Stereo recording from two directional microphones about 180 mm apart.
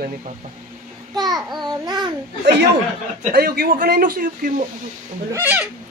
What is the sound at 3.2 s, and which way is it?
Speech, 55° right (ahead or behind).